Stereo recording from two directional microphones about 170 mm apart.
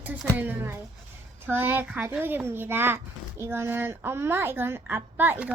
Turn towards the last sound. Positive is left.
turn(degrees=-10)  # may be behind; listen again after turning